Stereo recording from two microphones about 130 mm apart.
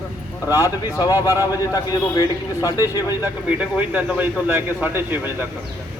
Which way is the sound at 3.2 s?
10° right (ahead or behind).